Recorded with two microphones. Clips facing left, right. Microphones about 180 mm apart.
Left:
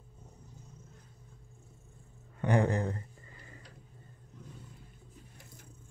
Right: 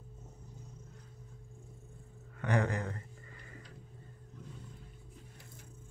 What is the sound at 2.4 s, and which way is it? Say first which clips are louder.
Speech: left 4 dB; 30° left (ahead or behind).